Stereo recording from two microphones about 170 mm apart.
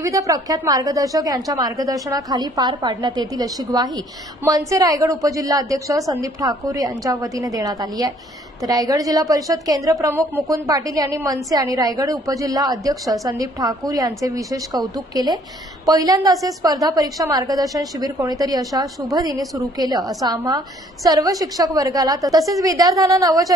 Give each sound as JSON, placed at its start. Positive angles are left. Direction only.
{"t": 0.0, "sound": "a woman's voice", "side_deg": -20}